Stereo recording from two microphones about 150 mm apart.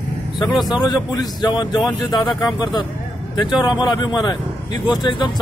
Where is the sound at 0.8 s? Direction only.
25° left (ahead or behind).